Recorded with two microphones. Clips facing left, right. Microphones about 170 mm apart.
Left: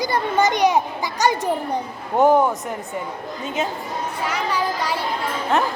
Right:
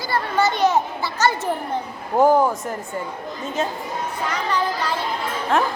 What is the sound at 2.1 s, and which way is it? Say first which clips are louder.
Speech: even; centre (ahead or behind).